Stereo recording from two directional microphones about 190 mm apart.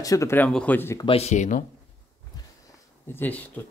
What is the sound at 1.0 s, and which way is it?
Speech, 30° left (ahead or behind).